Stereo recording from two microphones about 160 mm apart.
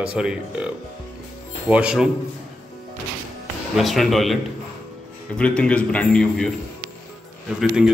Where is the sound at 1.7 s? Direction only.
5° right (ahead or behind).